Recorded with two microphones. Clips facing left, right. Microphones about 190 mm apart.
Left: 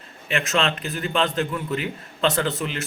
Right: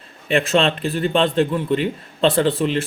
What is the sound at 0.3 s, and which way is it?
A man's voice, 30° right (ahead or behind).